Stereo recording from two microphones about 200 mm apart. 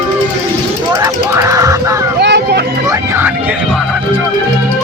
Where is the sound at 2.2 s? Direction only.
55° right (ahead or behind).